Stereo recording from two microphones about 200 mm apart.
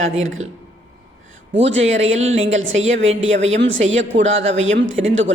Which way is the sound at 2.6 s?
75° right (ahead or behind).